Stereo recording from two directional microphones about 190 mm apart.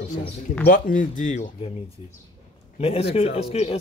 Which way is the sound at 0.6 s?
45° left (ahead or behind).